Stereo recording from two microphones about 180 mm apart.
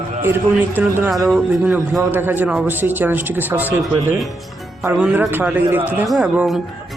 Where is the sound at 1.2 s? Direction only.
Centre (ahead or behind).